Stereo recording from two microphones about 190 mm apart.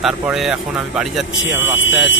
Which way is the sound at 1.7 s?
90° left.